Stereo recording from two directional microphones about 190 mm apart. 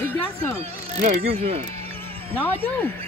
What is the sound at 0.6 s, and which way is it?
Speech, 35° right (ahead or behind).